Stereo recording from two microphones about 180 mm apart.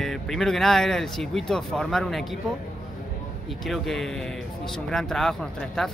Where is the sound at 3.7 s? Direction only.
Centre (ahead or behind).